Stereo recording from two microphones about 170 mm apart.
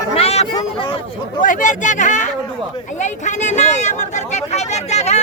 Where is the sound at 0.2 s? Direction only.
35° left (ahead or behind).